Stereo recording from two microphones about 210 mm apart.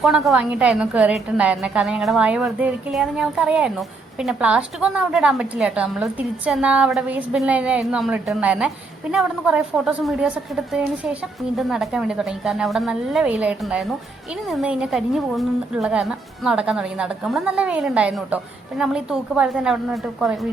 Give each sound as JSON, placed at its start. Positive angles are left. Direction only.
{"t": 0.0, "sound": "a woman's voice", "side_deg": 0}